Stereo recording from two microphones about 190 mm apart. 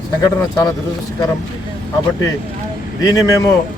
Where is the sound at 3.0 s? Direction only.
20° left (ahead or behind).